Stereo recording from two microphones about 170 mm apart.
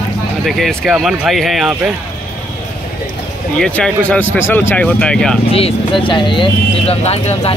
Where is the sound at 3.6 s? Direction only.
5° left (ahead or behind).